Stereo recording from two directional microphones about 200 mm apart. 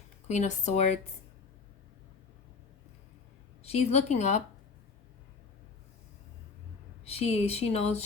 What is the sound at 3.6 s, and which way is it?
Speech, 30° left (ahead or behind).